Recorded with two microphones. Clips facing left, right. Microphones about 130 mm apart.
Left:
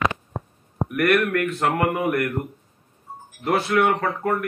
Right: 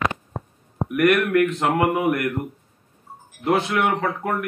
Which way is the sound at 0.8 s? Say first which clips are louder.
Right 4 dB; 15° right (ahead or behind).